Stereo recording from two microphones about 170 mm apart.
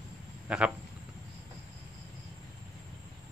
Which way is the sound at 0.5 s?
5° right (ahead or behind).